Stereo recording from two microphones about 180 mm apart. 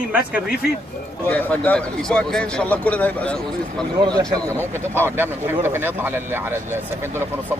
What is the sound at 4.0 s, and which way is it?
Speech, 20° right (ahead or behind).